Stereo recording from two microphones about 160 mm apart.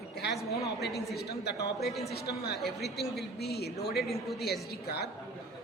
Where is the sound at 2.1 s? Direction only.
90° left.